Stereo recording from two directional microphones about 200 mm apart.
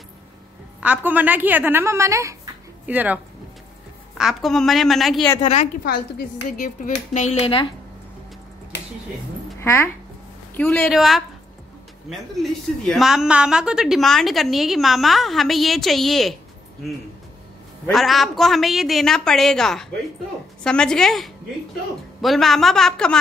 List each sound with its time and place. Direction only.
0.7 s a woman's voice: 5° right (ahead or behind)
4.2 s a woman's voice: centre (ahead or behind)
5.4 s speech: 35° left (ahead or behind)
6.1 s speech: 45° left (ahead or behind); by 7.6 s 30° left (ahead or behind)
9.6 s a woman's voice: 10° left (ahead or behind)
17.8 s a woman's voice: centre (ahead or behind)